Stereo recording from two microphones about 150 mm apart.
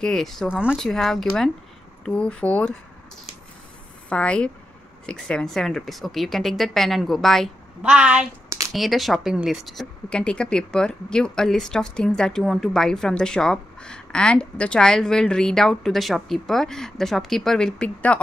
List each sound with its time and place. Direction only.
0.0 s speech: centre (ahead or behind)
4.1 s speech: 5° left (ahead or behind)
8.5 s a sound: 20° right (ahead or behind)
8.7 s speech: centre (ahead or behind)